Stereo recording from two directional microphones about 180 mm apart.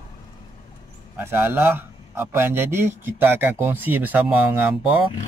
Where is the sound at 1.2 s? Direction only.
10° right (ahead or behind).